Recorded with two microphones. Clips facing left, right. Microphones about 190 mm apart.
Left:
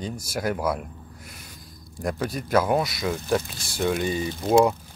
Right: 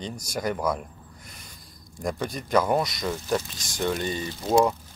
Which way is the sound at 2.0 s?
5° left (ahead or behind).